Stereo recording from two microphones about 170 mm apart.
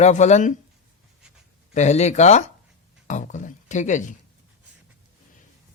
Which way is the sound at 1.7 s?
40° left (ahead or behind).